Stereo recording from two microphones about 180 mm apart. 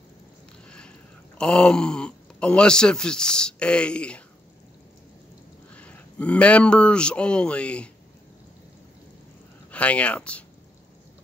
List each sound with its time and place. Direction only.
0.7 s boat: 5° left (ahead or behind)
1.4 s speech: 5° left (ahead or behind)
5.7 s a man's voice: 5° left (ahead or behind)
9.7 s speech: 5° left (ahead or behind)